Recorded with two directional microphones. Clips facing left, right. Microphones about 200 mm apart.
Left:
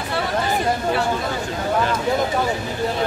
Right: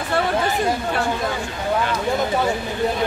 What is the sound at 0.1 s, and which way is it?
Chatter, 45° right (ahead or behind).